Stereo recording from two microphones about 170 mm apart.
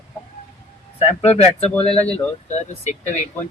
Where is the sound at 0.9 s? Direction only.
40° left (ahead or behind).